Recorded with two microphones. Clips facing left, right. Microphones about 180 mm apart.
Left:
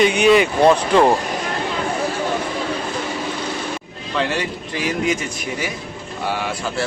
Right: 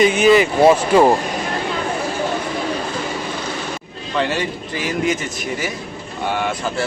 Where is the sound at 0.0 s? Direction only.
Centre (ahead or behind).